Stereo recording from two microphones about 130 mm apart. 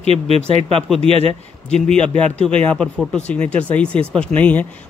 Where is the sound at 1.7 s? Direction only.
10° left (ahead or behind).